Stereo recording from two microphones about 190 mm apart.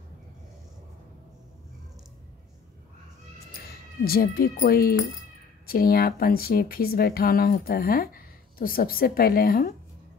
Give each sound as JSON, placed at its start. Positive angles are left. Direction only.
{"t": 4.0, "sound": "speech", "side_deg": 50}